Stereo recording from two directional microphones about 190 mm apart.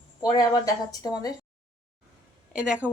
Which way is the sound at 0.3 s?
20° left (ahead or behind).